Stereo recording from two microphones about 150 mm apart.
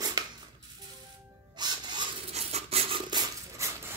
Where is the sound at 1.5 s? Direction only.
30° right (ahead or behind).